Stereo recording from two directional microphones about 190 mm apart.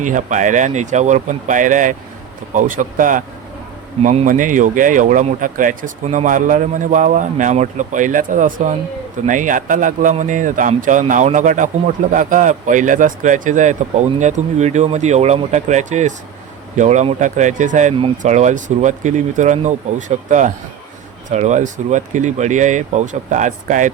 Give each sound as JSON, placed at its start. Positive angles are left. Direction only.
{"t": 0.0, "sound": "speech", "side_deg": -40}